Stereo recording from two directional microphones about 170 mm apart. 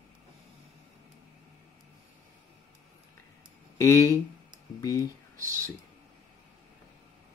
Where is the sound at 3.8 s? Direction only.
15° left (ahead or behind).